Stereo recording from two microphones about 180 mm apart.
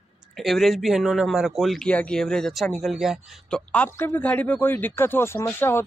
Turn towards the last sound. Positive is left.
turn(degrees=10)  # may be behind; listen again after turning